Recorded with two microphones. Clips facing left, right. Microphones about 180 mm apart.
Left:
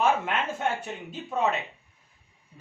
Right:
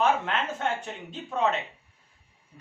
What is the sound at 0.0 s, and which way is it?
Speech, 10° left (ahead or behind).